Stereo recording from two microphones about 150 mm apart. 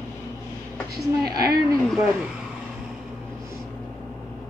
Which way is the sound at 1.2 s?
25° right (ahead or behind).